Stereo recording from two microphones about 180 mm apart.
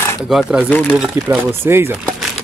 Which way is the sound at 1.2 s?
10° right (ahead or behind).